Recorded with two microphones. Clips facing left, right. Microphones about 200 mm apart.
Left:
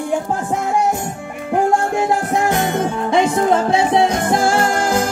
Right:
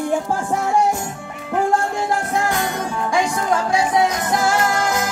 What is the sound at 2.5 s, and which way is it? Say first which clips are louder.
Music: left 5 dB; 20° left (ahead or behind).